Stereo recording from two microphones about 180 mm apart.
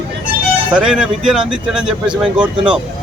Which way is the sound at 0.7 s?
5° right (ahead or behind).